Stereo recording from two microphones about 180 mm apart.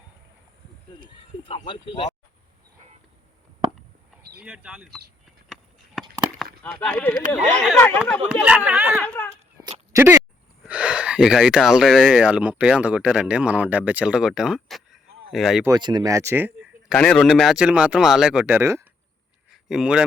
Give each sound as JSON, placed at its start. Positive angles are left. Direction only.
{"t": 1.5, "sound": "speech", "side_deg": 30}
{"t": 4.4, "sound": "speech", "side_deg": -5}
{"t": 5.5, "sound": "a sound", "side_deg": 0}
{"t": 6.4, "sound": "chop", "side_deg": 5}
{"t": 7.8, "sound": "speech", "side_deg": 10}
{"t": 8.3, "sound": "speech", "side_deg": -5}
{"t": 9.0, "sound": "speech", "side_deg": 10}
{"t": 9.3, "sound": "a sound", "side_deg": -20}
{"t": 10.6, "sound": "speech", "side_deg": -5}
{"t": 15.6, "sound": "speech", "side_deg": -20}
{"t": 16.9, "sound": "speech", "side_deg": 5}
{"t": 19.5, "sound": "a sound", "side_deg": -5}